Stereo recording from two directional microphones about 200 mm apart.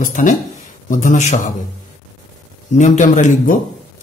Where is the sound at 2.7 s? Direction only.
40° left (ahead or behind).